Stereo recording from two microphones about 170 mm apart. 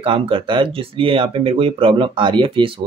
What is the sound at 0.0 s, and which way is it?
Speech, 30° right (ahead or behind).